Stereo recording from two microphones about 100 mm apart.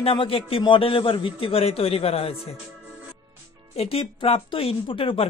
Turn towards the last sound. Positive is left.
turn(degrees=65)  # may be behind; listen again after turning